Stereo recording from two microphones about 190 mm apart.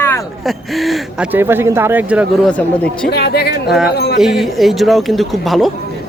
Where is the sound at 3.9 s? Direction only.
60° left (ahead or behind).